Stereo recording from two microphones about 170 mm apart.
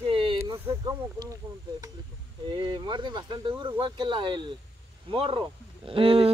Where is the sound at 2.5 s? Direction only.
25° right (ahead or behind).